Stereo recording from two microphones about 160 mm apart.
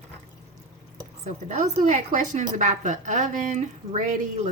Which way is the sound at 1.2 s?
50° right (ahead or behind).